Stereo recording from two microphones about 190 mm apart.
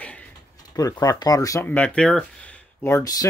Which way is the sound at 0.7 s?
20° left (ahead or behind).